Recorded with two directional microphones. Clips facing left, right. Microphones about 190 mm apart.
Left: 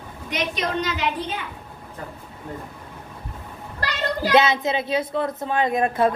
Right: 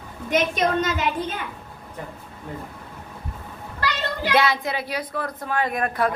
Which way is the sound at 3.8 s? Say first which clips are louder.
Left 2 dB; 40° left (ahead or behind).